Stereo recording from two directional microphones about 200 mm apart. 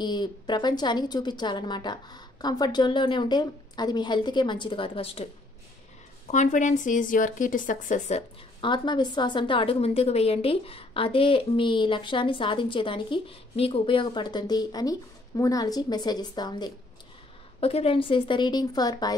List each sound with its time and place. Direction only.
0.0 s a woman's voice: 20° left (ahead or behind); by 8.2 s 40° left (ahead or behind)
8.5 s a woman's voice: 25° left (ahead or behind)